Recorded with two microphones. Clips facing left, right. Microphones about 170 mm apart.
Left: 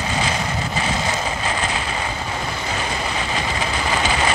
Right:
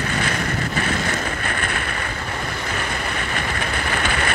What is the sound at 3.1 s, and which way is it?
Vehicle, 60° right (ahead or behind).